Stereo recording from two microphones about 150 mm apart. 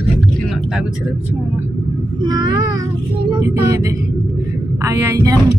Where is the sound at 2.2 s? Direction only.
25° right (ahead or behind).